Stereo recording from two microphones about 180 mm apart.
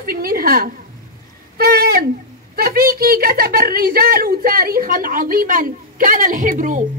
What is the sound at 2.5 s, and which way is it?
A woman's voice, 55° right (ahead or behind).